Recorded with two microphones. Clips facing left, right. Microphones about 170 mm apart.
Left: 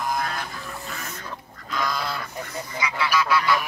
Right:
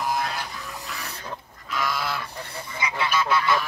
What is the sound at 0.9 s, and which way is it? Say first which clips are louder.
Pig: right 1 dB; 40° left (ahead or behind).